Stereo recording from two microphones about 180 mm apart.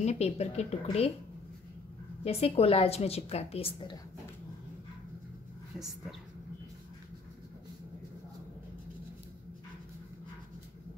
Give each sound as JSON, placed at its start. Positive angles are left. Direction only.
{"t": 0.0, "sound": "a woman's voice", "side_deg": 40}
{"t": 2.2, "sound": "a woman's voice", "side_deg": 35}